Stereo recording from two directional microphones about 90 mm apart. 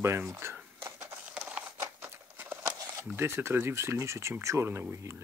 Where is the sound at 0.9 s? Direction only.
35° right (ahead or behind).